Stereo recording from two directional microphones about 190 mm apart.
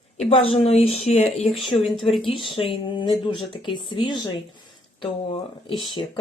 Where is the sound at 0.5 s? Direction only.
35° left (ahead or behind).